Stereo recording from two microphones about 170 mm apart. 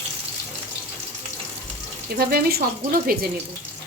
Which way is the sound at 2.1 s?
60° right (ahead or behind).